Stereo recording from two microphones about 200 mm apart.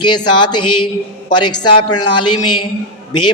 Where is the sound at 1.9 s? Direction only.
20° left (ahead or behind).